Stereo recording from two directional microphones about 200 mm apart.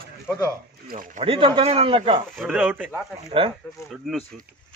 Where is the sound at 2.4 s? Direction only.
5° right (ahead or behind).